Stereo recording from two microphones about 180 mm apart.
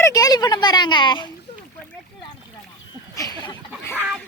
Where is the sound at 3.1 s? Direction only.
20° left (ahead or behind).